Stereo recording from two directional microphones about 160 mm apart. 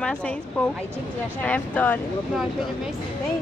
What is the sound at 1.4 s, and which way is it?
Speech, 10° left (ahead or behind).